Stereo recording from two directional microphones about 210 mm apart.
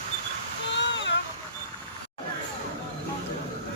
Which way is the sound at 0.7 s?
60° left (ahead or behind).